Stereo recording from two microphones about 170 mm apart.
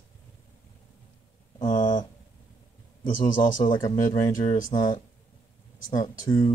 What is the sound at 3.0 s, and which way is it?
Speech, 50° left (ahead or behind).